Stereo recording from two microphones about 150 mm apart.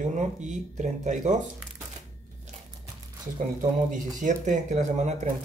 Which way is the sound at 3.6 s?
60° right (ahead or behind).